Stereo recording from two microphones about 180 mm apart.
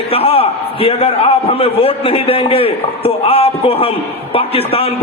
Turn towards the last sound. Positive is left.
turn(degrees=35)  # may be behind; listen again after turning